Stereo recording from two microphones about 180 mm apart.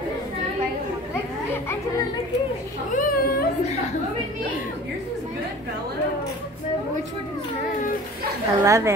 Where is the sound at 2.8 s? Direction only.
50° left (ahead or behind).